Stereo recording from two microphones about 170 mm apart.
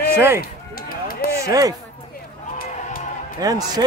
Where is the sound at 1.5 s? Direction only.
20° right (ahead or behind).